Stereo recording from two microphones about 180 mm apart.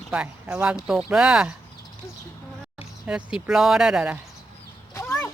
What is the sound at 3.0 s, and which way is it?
Speech, 5° right (ahead or behind).